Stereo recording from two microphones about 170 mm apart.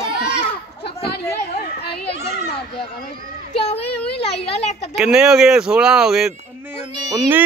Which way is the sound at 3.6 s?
35° left (ahead or behind).